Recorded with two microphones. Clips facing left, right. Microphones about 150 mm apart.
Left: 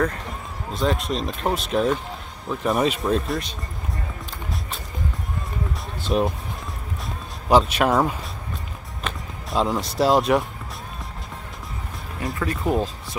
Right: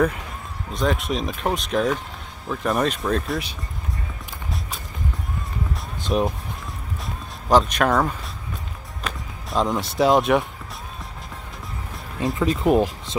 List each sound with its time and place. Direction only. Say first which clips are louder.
0.7 s speech: even; centre (ahead or behind)
6.0 s speech: even; centre (ahead or behind)
7.4 s speech: even; 10° left (ahead or behind)
12.2 s speech: right 5 dB; 20° right (ahead or behind)